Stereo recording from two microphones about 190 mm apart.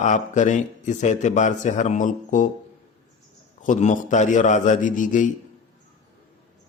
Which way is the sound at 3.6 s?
40° left (ahead or behind).